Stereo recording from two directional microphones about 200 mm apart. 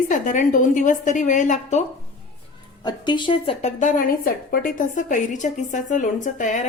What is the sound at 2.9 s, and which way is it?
Speech, 20° left (ahead or behind).